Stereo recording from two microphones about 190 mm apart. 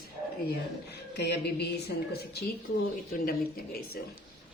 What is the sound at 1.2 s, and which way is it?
A woman's voice, 60° left (ahead or behind).